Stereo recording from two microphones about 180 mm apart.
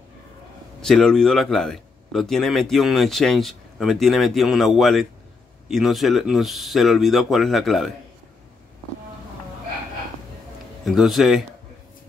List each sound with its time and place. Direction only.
0.7 s speech: 5° left (ahead or behind)
10.9 s speech: centre (ahead or behind)